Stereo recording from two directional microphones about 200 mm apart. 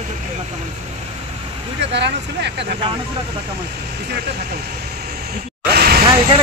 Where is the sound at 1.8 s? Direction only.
60° right (ahead or behind).